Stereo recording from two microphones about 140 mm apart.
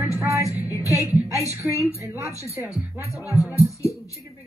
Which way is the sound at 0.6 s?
25° left (ahead or behind).